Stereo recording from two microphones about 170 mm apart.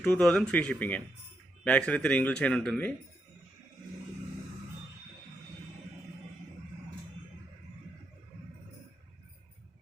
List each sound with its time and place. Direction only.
0.0 s speech: 10° left (ahead or behind)